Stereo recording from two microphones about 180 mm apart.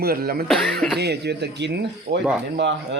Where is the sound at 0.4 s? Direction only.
Centre (ahead or behind).